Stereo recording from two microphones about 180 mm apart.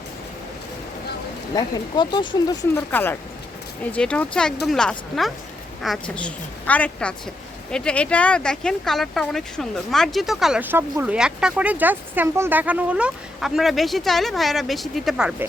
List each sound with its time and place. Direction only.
1.5 s speech: 25° left (ahead or behind)
2.9 s a woman's voice: 10° left (ahead or behind)